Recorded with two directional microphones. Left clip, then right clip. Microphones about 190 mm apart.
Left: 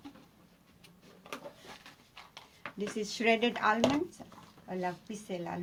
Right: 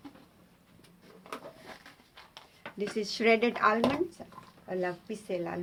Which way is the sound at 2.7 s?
30° right (ahead or behind).